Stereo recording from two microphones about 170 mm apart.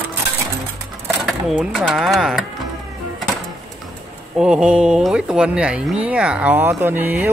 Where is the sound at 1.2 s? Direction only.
Centre (ahead or behind).